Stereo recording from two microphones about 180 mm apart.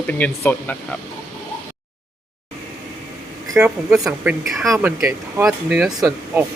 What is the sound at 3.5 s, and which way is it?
Speech, 5° right (ahead or behind).